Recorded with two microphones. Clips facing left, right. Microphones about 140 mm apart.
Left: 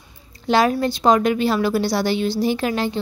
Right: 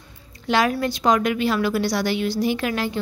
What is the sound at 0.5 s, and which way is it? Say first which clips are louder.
A woman's voice: left 3 dB; 35° left (ahead or behind).